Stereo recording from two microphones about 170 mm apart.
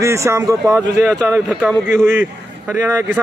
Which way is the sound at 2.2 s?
15° right (ahead or behind).